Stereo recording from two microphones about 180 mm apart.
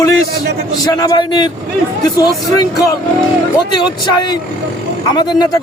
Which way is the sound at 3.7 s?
25° left (ahead or behind).